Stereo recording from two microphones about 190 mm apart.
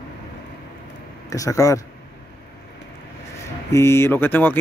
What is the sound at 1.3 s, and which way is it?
Speech, 15° left (ahead or behind).